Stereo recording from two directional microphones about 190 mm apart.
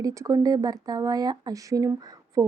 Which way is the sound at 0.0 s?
15° right (ahead or behind).